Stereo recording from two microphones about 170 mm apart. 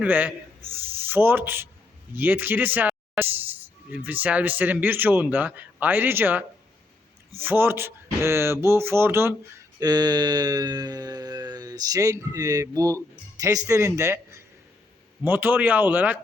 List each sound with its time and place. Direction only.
0.0 s a man's voice: 10° right (ahead or behind)
9.8 s mantra: 25° right (ahead or behind)
13.7 s speech: 15° right (ahead or behind)